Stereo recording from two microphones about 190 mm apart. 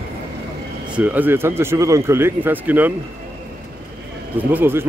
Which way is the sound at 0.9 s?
10° right (ahead or behind).